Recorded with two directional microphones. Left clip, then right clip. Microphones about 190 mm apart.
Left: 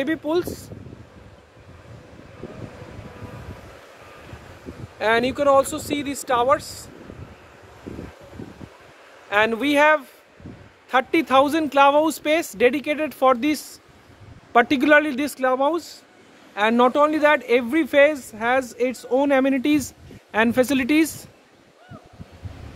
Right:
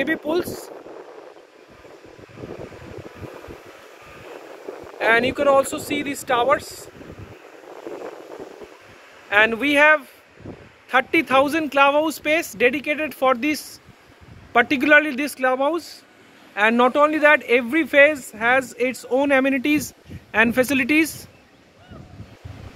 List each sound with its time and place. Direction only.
0.0 s speech: 10° left (ahead or behind)
5.0 s speech: 10° left (ahead or behind)
9.3 s a man's voice: 10° left (ahead or behind)